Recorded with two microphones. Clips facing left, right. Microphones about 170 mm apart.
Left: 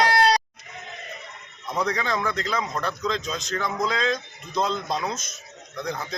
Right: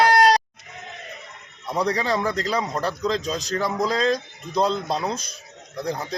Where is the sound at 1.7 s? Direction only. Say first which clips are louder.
Right 3 dB; 35° right (ahead or behind).